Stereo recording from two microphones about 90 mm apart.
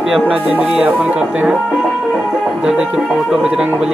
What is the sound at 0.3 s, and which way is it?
Speech, 15° right (ahead or behind).